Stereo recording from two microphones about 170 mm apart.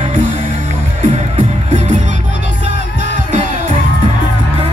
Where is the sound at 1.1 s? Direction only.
40° right (ahead or behind).